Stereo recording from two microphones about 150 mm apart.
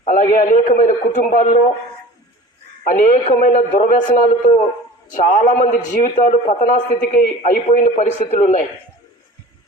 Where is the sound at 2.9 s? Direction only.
60° left (ahead or behind).